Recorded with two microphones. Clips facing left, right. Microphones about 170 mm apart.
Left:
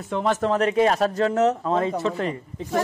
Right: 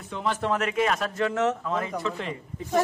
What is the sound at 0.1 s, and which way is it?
Speech, 45° left (ahead or behind).